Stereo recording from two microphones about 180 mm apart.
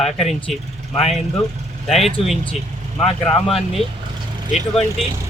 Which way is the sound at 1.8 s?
Centre (ahead or behind).